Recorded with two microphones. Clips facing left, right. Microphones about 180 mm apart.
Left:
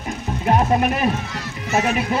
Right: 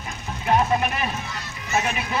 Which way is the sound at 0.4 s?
40° left (ahead or behind).